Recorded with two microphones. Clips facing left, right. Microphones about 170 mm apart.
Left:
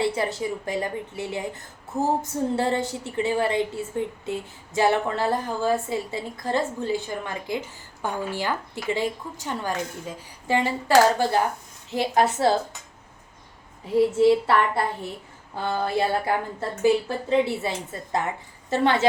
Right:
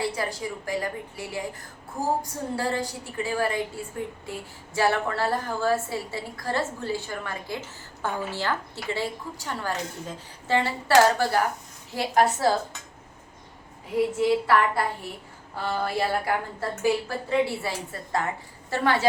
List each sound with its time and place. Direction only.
0.0 s speech: 25° left (ahead or behind)
13.9 s speech: 25° left (ahead or behind)